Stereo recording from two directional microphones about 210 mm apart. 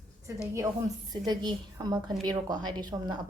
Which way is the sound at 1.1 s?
20° right (ahead or behind).